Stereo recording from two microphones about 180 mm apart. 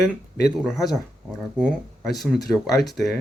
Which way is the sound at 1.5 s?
5° right (ahead or behind).